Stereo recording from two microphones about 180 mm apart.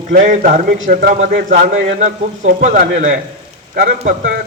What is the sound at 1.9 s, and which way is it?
A man's voice, 45° right (ahead or behind).